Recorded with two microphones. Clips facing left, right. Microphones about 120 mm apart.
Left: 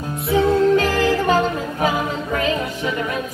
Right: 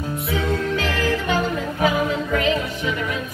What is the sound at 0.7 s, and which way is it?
Music, 40° left (ahead or behind).